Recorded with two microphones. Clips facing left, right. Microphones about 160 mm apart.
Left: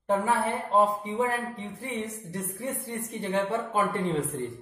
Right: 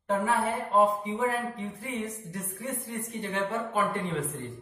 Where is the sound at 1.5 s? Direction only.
35° left (ahead or behind).